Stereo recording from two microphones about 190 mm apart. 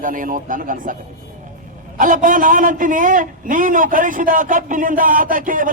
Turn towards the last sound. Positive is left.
turn(degrees=-45)  # may be behind; listen again after turning